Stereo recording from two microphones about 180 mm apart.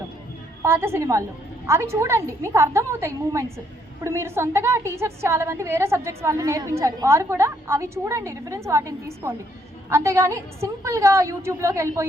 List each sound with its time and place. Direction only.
0.6 s a woman's voice: 15° right (ahead or behind)